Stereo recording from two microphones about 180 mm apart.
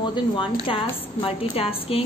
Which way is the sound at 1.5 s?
30° left (ahead or behind).